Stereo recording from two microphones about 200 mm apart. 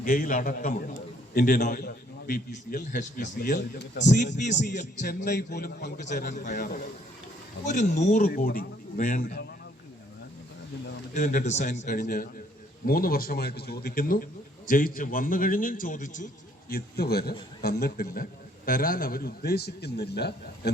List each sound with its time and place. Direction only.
0.0 s a man's voice: 45° left (ahead or behind)
1.8 s a sound: 55° left (ahead or behind)
2.5 s a man's voice: 40° left (ahead or behind)
3.6 s speech: 60° left (ahead or behind)
4.0 s a man's voice: 40° left (ahead or behind); by 6.1 s 55° left (ahead or behind)
6.4 s a man's voice: 40° left (ahead or behind)
8.3 s a man's voice: 45° left (ahead or behind)
11.1 s a man's voice: 35° left (ahead or behind); by 20.7 s 55° left (ahead or behind)